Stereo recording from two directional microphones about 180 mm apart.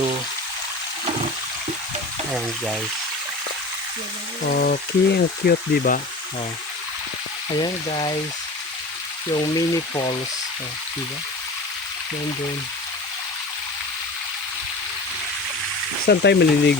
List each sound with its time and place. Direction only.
4.5 s speech: 60° left (ahead or behind)
7.6 s speech: 30° left (ahead or behind)
9.3 s speech: 25° left (ahead or behind)
16.0 s speech: 70° left (ahead or behind)